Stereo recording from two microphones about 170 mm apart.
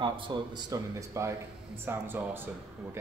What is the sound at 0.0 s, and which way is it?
Speech, 25° right (ahead or behind).